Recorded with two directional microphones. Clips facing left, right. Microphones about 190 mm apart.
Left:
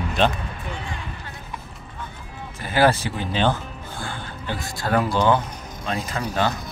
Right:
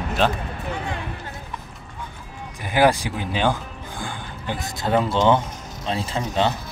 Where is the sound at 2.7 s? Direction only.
15° right (ahead or behind).